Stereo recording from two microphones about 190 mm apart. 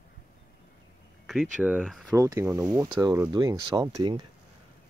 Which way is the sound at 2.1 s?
15° right (ahead or behind).